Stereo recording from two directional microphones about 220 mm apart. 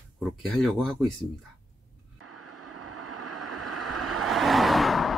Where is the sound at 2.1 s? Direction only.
90° right.